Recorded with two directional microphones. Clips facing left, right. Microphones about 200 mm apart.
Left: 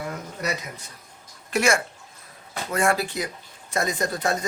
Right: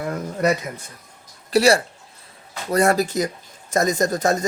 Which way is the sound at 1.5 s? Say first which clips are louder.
Right 6 dB; 35° right (ahead or behind).